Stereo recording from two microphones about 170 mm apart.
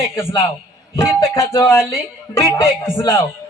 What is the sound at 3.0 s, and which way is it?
Speech, 20° left (ahead or behind).